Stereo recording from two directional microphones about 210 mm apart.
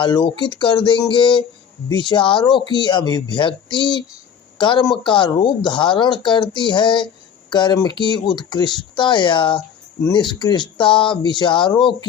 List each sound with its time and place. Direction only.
0.0 s a woman's voice: 20° left (ahead or behind)